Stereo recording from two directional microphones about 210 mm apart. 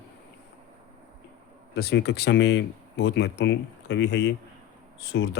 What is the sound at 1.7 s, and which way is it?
Speech, 50° left (ahead or behind).